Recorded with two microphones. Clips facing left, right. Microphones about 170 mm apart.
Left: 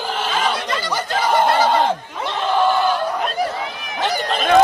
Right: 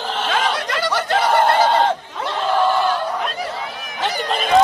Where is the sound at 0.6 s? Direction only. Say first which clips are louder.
Right 2 dB; 80° right.